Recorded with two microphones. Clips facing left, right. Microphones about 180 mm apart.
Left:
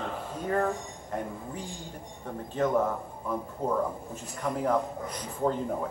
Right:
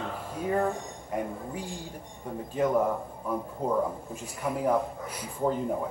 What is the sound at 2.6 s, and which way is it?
Speech, 10° right (ahead or behind).